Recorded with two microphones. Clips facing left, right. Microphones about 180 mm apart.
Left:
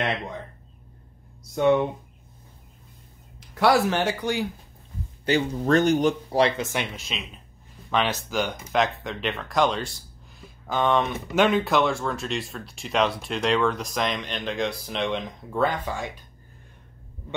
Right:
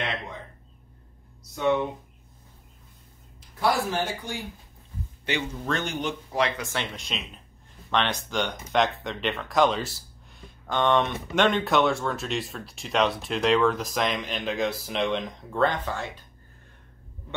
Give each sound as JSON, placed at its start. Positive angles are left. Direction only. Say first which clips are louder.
{"t": 3.3, "sound": "speech", "louder": "left 5 dB", "side_deg": 75}
{"t": 5.2, "sound": "speech", "louder": "left 7 dB", "side_deg": 40}
{"t": 7.0, "sound": "speech", "louder": "even", "side_deg": 0}